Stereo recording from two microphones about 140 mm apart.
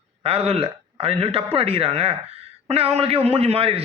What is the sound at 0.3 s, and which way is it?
A man's voice, 45° right (ahead or behind).